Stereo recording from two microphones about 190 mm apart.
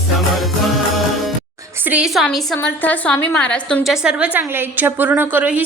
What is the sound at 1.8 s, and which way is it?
A woman's voice, 5° right (ahead or behind).